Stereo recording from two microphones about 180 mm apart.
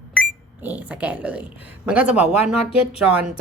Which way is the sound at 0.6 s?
10° right (ahead or behind).